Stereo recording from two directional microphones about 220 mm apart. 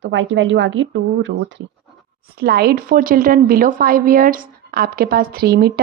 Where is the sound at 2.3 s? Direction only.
45° right (ahead or behind).